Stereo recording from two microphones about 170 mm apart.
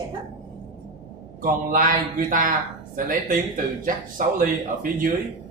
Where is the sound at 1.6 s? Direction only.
50° right (ahead or behind).